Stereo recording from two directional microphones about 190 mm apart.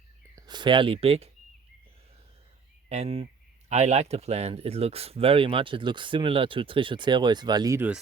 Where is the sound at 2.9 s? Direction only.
35° right (ahead or behind); by 7.9 s 15° right (ahead or behind).